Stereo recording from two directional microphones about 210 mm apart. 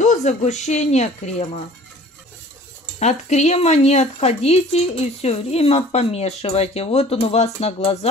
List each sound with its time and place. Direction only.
0.0 s speech: 35° left (ahead or behind)
3.0 s speech: 35° left (ahead or behind)